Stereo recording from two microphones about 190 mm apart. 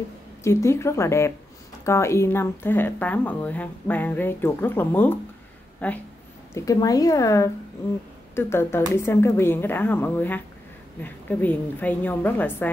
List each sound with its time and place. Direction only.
0.4 s speech: 15° left (ahead or behind)
6.5 s speech: 15° left (ahead or behind)